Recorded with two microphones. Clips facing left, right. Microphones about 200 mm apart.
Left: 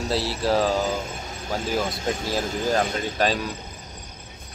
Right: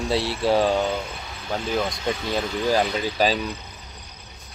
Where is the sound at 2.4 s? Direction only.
45° left (ahead or behind).